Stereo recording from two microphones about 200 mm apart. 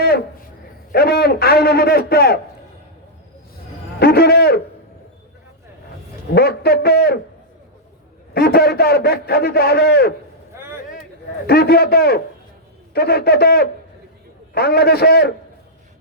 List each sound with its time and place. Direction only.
0.9 s a man's voice: 50° left (ahead or behind)
4.0 s a man's voice: 50° left (ahead or behind)
6.3 s a man's voice: 50° left (ahead or behind)
8.3 s a man's voice: 50° left (ahead or behind)
11.4 s a man's voice: 50° left (ahead or behind)